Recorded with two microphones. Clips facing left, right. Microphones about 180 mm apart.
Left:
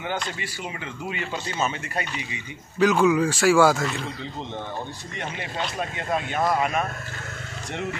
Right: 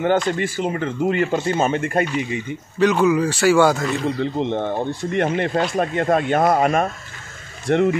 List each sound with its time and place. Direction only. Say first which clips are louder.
0.0 s speech: right 12 dB; 50° right (ahead or behind)
2.8 s speech: right 2 dB; centre (ahead or behind)
4.0 s speech: right 12 dB; 65° right (ahead or behind); by 6.9 s 45° right (ahead or behind)
7.7 s speech: right 15 dB; 60° right (ahead or behind)